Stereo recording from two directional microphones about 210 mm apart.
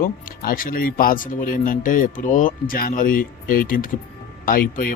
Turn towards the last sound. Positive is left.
turn(degrees=40)  # may be behind; listen again after turning